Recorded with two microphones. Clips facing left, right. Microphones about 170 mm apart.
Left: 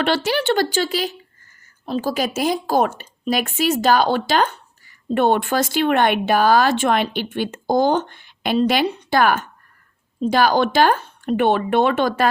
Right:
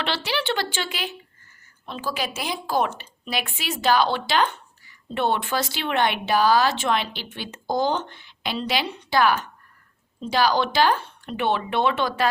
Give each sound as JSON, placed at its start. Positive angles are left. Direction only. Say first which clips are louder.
{"t": 0.0, "sound": "speech", "louder": "left 7 dB", "side_deg": 45}